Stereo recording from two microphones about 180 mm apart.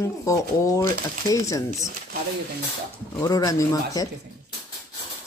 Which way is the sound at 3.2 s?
20° left (ahead or behind).